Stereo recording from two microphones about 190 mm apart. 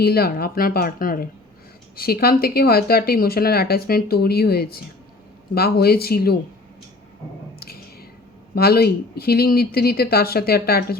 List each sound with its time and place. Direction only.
0.0 s speech: 55° left (ahead or behind)
8.5 s speech: 55° left (ahead or behind)